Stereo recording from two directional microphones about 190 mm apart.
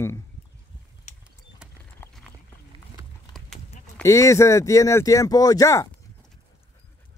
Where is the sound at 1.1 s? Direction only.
40° left (ahead or behind).